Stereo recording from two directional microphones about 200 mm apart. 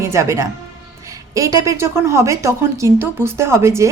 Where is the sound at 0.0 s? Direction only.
15° right (ahead or behind).